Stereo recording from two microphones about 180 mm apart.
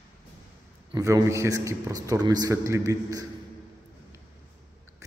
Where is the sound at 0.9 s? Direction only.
20° right (ahead or behind).